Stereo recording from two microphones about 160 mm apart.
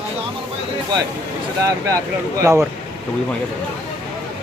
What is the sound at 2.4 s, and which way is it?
Speech, 20° right (ahead or behind).